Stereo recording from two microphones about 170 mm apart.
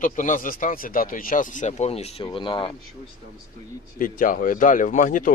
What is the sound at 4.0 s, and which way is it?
Speech, 55° left (ahead or behind).